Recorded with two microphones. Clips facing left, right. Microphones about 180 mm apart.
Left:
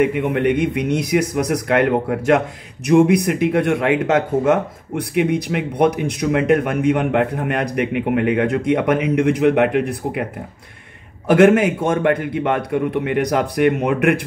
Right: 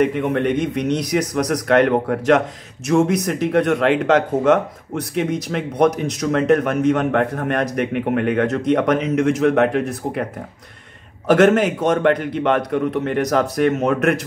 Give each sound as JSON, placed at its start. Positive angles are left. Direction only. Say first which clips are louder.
{"t": 0.0, "sound": "speech", "louder": "left 1 dB", "side_deg": 10}
{"t": 11.2, "sound": "speech", "louder": "left 1 dB", "side_deg": 10}